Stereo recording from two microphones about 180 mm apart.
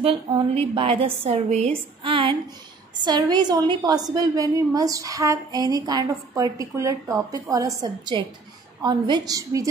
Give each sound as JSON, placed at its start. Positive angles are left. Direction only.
{"t": 0.0, "sound": "a woman's voice", "side_deg": -30}